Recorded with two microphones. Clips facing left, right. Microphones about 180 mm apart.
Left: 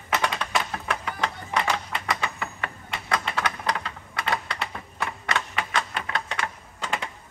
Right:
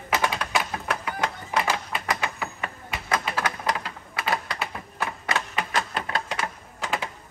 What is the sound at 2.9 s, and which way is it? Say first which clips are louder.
Typing: right 1 dB; 5° right (ahead or behind).